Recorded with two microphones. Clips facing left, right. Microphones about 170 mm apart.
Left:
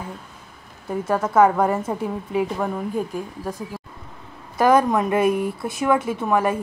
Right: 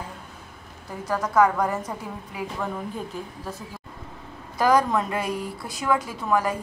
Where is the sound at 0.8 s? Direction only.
25° left (ahead or behind).